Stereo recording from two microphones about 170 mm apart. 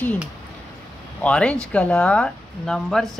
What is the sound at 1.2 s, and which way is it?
Speech, 5° left (ahead or behind).